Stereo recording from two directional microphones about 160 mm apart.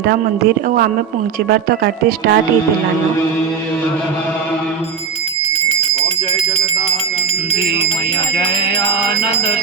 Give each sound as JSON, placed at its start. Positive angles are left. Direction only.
{"t": 1.5, "sound": "speech", "side_deg": -85}